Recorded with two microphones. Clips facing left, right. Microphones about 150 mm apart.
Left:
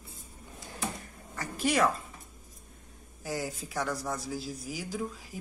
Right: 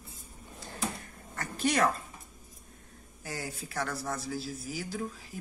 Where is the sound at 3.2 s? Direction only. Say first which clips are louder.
Left 4 dB; 15° left (ahead or behind).